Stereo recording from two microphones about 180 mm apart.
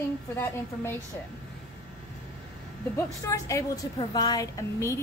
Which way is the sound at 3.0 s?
15° left (ahead or behind).